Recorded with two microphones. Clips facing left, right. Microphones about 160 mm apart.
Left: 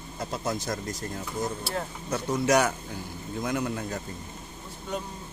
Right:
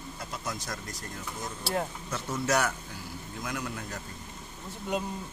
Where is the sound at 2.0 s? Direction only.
40° left (ahead or behind).